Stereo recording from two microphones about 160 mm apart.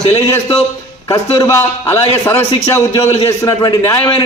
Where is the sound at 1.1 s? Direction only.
15° left (ahead or behind).